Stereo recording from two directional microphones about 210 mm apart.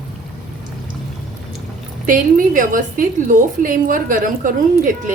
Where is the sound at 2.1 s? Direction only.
40° right (ahead or behind).